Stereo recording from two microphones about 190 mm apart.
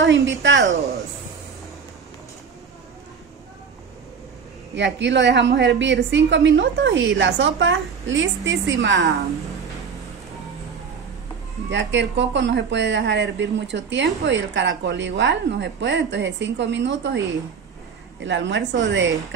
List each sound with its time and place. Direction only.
0.3 s speech: 80° right
4.7 s speech: 70° right (ahead or behind)
11.7 s speech: 70° right (ahead or behind)